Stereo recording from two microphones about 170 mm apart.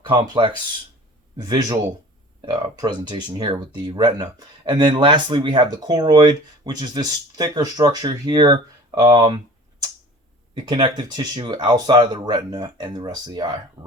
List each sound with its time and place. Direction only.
0.1 s speech: 30° right (ahead or behind)
10.5 s speech: 30° right (ahead or behind)